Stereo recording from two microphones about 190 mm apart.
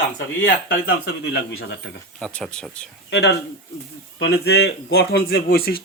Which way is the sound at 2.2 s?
5° left (ahead or behind).